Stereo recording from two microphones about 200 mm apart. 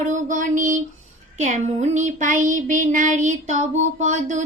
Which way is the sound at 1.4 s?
40° right (ahead or behind).